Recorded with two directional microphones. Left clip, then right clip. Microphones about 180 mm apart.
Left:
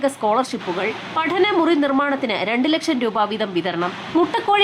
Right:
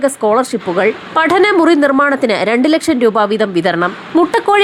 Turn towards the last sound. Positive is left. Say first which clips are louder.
# right 6 dB
turn(degrees=-30)  # may be behind; listen again after turning